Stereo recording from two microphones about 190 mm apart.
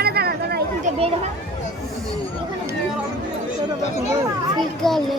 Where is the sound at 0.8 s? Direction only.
35° right (ahead or behind).